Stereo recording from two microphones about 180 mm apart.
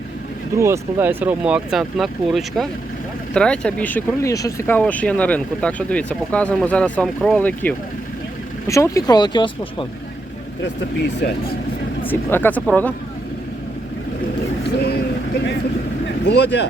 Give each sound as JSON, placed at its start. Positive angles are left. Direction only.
{"t": 0.5, "sound": "speech", "side_deg": -15}
{"t": 12.0, "sound": "speech", "side_deg": 10}
{"t": 14.8, "sound": "vehicle", "side_deg": 65}
{"t": 16.2, "sound": "speech", "side_deg": 80}